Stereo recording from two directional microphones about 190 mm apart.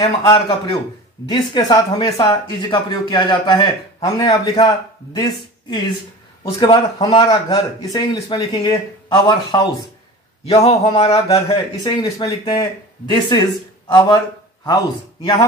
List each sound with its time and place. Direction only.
0.2 s speech: 25° left (ahead or behind)
10.4 s a man's voice: 30° left (ahead or behind)